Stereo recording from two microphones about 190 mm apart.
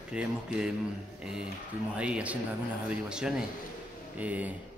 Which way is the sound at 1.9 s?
5° right (ahead or behind).